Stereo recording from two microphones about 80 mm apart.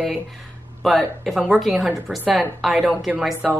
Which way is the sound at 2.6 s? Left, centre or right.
Centre.